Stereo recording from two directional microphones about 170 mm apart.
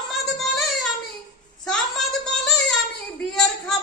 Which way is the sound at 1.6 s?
5° left (ahead or behind).